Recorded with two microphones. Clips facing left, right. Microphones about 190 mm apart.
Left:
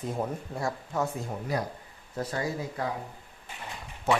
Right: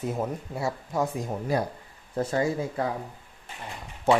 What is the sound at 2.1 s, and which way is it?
Speech, 25° right (ahead or behind).